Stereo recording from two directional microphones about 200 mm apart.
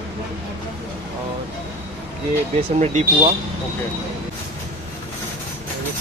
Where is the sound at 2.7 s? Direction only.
35° right (ahead or behind).